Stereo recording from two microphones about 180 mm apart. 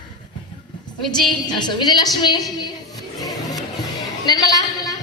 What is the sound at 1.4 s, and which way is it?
Speech, 25° left (ahead or behind).